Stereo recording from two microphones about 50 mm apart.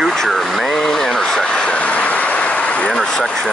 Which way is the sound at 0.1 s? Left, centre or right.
Centre.